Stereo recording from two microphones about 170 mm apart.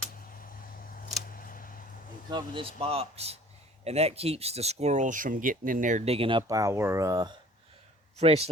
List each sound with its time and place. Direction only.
0.3 s a sound: 55° left (ahead or behind)
2.3 s speech: 30° right (ahead or behind)
6.5 s speech: 20° right (ahead or behind)
8.2 s speech: 35° right (ahead or behind)